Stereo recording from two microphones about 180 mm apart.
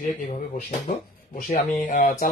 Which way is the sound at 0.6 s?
50° left (ahead or behind).